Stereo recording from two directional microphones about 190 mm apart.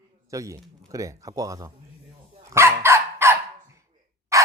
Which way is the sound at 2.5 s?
15° right (ahead or behind).